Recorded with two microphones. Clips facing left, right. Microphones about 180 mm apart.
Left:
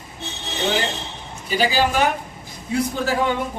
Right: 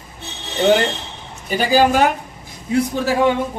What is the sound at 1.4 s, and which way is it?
Speech, 50° right (ahead or behind).